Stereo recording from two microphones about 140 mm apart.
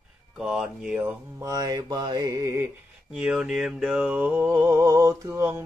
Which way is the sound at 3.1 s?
5° right (ahead or behind).